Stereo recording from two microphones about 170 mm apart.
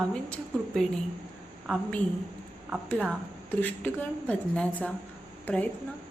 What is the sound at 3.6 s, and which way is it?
A woman's voice, 10° left (ahead or behind).